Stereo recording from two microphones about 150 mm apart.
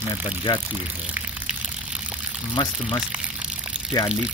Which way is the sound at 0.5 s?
30° left (ahead or behind).